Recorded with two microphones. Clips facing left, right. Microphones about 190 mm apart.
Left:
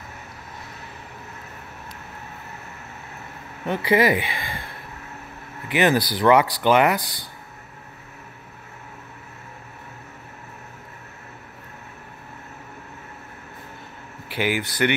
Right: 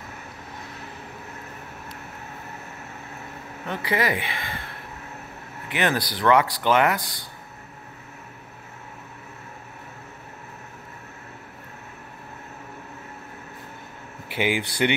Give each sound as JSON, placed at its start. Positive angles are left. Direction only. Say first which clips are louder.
{"t": 3.6, "sound": "speech", "louder": "left 6 dB", "side_deg": 15}
{"t": 5.7, "sound": "speech", "louder": "left 5 dB", "side_deg": 5}
{"t": 14.3, "sound": "speech", "louder": "even", "side_deg": -20}